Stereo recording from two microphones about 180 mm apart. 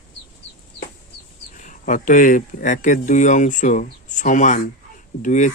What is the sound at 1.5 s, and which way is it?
Speech, 45° left (ahead or behind).